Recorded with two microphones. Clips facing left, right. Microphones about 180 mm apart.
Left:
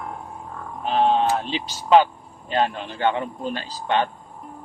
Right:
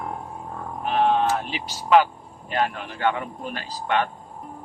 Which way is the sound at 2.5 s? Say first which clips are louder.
Left 2 dB; 25° left (ahead or behind).